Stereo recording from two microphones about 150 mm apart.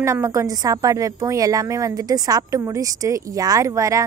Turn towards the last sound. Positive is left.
turn(degrees=-20)  # may be behind; listen again after turning